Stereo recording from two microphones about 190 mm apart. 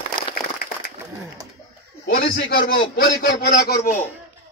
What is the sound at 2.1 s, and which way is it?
A man's voice, 55° left (ahead or behind).